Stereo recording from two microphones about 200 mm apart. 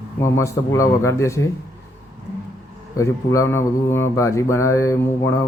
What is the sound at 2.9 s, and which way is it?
Mantra, 15° left (ahead or behind).